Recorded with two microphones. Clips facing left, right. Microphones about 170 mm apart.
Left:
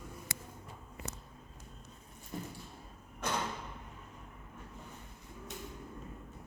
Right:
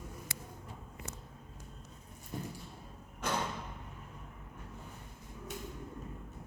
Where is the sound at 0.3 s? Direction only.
45° left (ahead or behind).